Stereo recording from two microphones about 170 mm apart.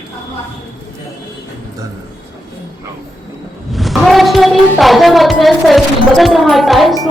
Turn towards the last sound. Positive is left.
turn(degrees=0)  # may be behind; listen again after turning